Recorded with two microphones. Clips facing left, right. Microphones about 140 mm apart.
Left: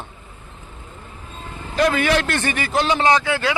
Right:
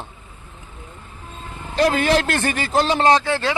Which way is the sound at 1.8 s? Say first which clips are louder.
Right 1 dB; 35° right (ahead or behind).